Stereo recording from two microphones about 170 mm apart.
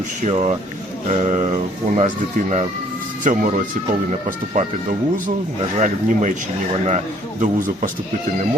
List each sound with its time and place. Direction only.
0.2 s speech: 40° right (ahead or behind)